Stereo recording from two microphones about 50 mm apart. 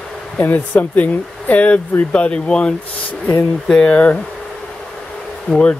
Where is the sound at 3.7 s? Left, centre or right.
Left.